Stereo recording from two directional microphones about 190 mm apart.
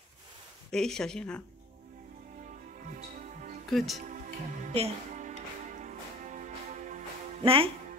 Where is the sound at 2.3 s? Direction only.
45° right (ahead or behind).